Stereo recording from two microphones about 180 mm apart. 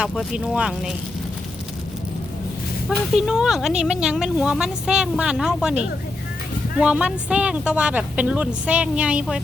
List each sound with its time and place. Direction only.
0.0 s a woman's voice: 5° right (ahead or behind)
3.2 s a woman's voice: 5° right (ahead or behind)